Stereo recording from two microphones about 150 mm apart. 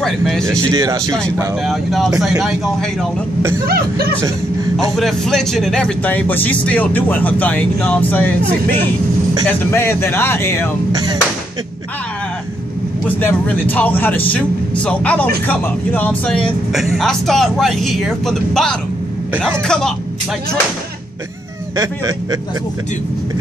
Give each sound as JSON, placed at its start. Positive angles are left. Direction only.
{"t": 0.0, "sound": "speech", "side_deg": 0}
{"t": 0.6, "sound": "speech", "side_deg": -25}
{"t": 1.7, "sound": "speech", "side_deg": 0}
{"t": 3.6, "sound": "speech", "side_deg": -90}
{"t": 4.9, "sound": "speech", "side_deg": 0}
{"t": 10.9, "sound": "speech", "side_deg": -25}
{"t": 13.0, "sound": "speech", "side_deg": 15}
{"t": 16.7, "sound": "speech", "side_deg": 0}
{"t": 21.7, "sound": "speech", "side_deg": -25}